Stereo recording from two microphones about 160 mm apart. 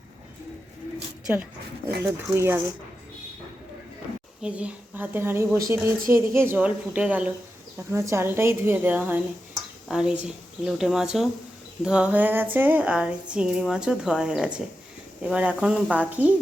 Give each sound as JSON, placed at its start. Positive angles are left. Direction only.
{"t": 2.0, "sound": "speech", "side_deg": -15}
{"t": 4.4, "sound": "speech", "side_deg": -5}